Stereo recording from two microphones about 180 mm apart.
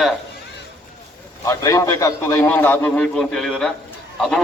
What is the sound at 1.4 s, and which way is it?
A man's voice, 15° left (ahead or behind).